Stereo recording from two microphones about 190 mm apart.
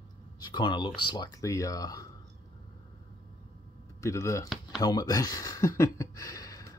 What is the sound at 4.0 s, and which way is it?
Speech, 15° left (ahead or behind).